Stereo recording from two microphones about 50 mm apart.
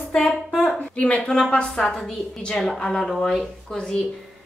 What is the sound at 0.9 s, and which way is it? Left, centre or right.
Speech, left.